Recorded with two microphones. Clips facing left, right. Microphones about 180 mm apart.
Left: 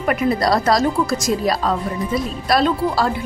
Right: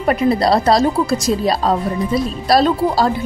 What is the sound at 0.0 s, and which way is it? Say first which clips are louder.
Speech: right 3 dB; 30° right (ahead or behind).